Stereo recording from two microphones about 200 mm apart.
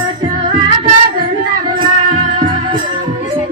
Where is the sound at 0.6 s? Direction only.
25° right (ahead or behind).